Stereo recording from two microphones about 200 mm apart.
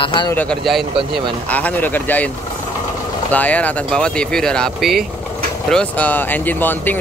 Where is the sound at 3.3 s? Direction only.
5° left (ahead or behind).